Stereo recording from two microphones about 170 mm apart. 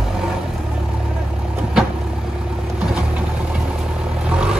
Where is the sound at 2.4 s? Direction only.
5° right (ahead or behind).